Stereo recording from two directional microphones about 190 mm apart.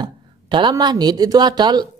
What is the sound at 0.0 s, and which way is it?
Speech, 25° right (ahead or behind).